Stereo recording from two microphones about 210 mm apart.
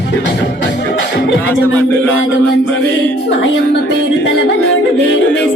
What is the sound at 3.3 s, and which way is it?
Music, 60° left (ahead or behind).